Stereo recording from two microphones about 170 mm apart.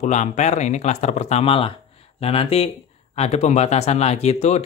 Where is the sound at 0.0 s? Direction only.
45° left (ahead or behind).